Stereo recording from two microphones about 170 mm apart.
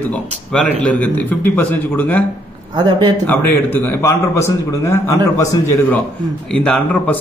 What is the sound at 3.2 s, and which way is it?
A man's voice, 10° left (ahead or behind).